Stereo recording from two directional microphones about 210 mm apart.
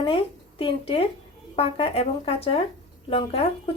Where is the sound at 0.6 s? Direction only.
25° left (ahead or behind).